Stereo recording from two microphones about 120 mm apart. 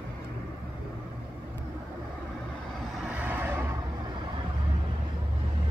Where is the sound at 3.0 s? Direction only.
15° right (ahead or behind).